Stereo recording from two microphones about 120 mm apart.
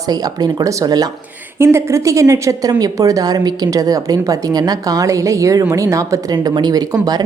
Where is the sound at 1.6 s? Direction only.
20° right (ahead or behind).